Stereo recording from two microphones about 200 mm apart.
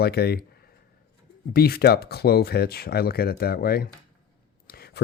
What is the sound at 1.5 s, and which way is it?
Speech, 50° left (ahead or behind).